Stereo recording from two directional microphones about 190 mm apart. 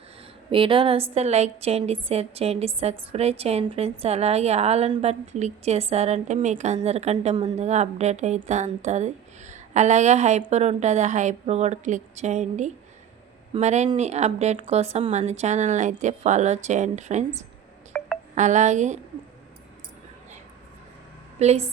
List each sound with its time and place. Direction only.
0.5 s a woman's voice: 30° right (ahead or behind)
17.9 s telephone dialing: 5° left (ahead or behind)
18.3 s a woman's voice: 40° right (ahead or behind)
21.3 s a woman's voice: 35° right (ahead or behind)